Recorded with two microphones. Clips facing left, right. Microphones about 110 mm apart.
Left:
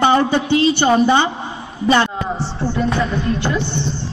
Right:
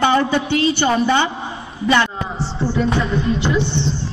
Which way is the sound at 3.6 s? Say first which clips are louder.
Right 1 dB; 30° right (ahead or behind).